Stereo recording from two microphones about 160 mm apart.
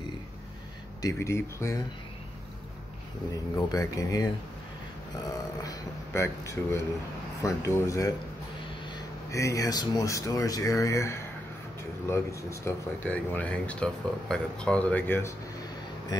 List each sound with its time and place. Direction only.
1.0 s speech: 15° left (ahead or behind)
3.5 s speech: 20° left (ahead or behind)
5.6 s speech: 20° left (ahead or behind)